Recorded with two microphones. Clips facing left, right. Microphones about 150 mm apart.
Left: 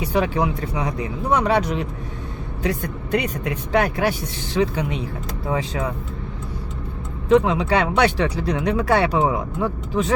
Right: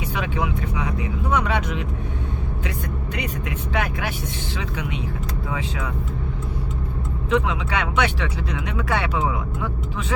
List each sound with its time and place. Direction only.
0.0 s speech: 35° left (ahead or behind)
7.3 s speech: 40° left (ahead or behind)